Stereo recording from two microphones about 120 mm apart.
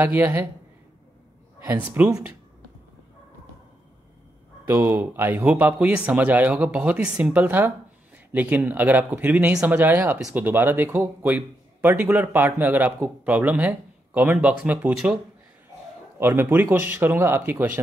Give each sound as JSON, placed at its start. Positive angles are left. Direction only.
{"t": 0.0, "sound": "a man's voice", "side_deg": -15}
{"t": 1.6, "sound": "a man's voice", "side_deg": -15}
{"t": 4.6, "sound": "a man's voice", "side_deg": -20}
{"t": 16.2, "sound": "speech", "side_deg": -20}